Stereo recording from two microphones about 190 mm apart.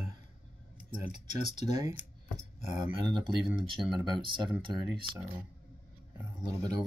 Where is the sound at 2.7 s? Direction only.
25° right (ahead or behind).